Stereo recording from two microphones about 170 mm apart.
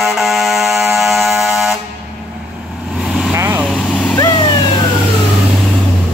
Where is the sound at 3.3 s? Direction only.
10° right (ahead or behind).